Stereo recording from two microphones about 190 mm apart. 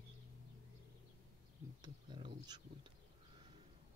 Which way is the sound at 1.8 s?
25° right (ahead or behind).